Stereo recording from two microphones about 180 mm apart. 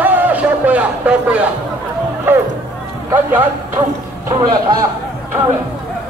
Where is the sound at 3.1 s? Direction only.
10° right (ahead or behind).